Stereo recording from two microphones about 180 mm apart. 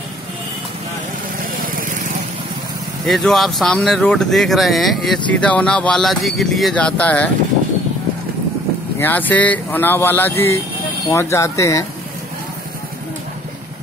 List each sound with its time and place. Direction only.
1.6 s vehicle: 50° right (ahead or behind)
3.1 s speech: centre (ahead or behind)
9.0 s speech: 10° left (ahead or behind)